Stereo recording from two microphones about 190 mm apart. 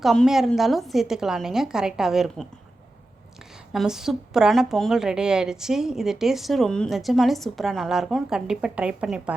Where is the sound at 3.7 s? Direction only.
Centre (ahead or behind).